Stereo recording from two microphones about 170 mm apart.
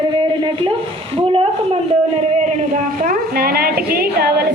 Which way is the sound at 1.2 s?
35° right (ahead or behind).